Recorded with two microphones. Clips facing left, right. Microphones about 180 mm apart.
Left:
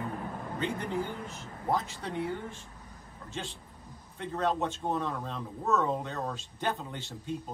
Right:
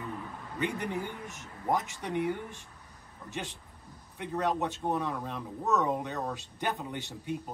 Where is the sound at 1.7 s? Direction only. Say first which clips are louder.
Right 1 dB; 15° right (ahead or behind).